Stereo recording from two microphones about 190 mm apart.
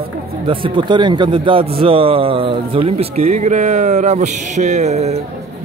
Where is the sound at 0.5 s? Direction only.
25° right (ahead or behind).